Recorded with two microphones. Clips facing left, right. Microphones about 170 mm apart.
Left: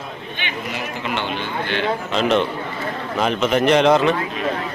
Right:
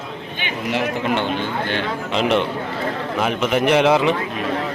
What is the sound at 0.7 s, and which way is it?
Speech, 70° right (ahead or behind).